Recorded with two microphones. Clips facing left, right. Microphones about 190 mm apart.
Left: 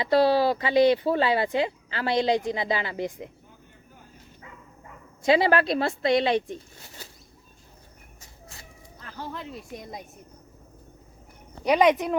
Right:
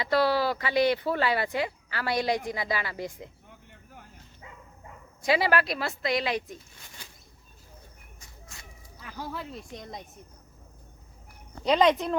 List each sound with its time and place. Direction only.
0.0 s speech: 20° left (ahead or behind)
5.2 s speech: 25° left (ahead or behind)
9.0 s speech: 10° right (ahead or behind); by 10.0 s 5° left (ahead or behind)
11.6 s speech: 15° left (ahead or behind)